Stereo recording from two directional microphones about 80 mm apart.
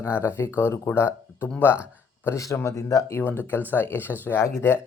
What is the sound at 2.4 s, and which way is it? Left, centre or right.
Speech, left.